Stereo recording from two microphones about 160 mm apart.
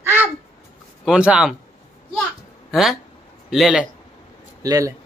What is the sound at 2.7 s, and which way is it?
Speech, centre (ahead or behind).